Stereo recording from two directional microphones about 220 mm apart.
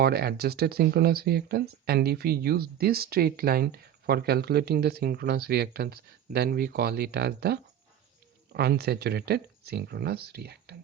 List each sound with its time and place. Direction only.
0.0 s speech: 45° right (ahead or behind)